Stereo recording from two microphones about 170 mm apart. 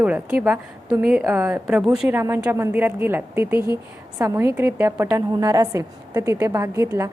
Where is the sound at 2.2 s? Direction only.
15° right (ahead or behind).